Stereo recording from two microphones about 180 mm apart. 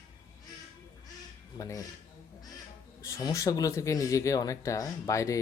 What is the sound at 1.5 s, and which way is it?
Speech, 20° left (ahead or behind).